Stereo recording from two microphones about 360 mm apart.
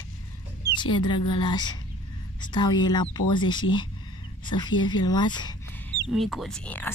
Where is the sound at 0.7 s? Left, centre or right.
Centre.